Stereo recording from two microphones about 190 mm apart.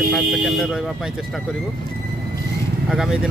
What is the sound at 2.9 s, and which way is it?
Speech, 5° right (ahead or behind).